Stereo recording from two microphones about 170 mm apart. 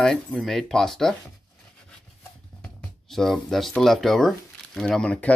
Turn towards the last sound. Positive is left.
turn(degrees=5)  # may be behind; listen again after turning